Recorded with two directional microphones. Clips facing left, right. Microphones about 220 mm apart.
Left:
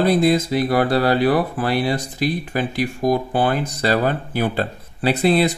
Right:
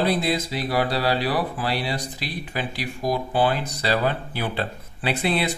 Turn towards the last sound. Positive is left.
turn(degrees=40)  # may be behind; listen again after turning